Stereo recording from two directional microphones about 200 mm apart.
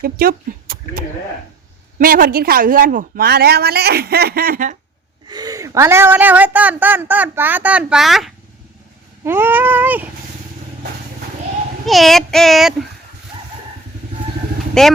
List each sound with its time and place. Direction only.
0.0 s a woman's voice: 45° right (ahead or behind)
5.3 s a woman's voice: 20° right (ahead or behind)
11.9 s child singing: centre (ahead or behind)
14.8 s child singing: centre (ahead or behind)